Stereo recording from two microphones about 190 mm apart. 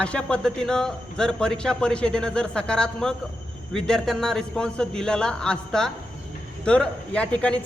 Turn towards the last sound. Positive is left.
turn(degrees=5)  # may be behind; listen again after turning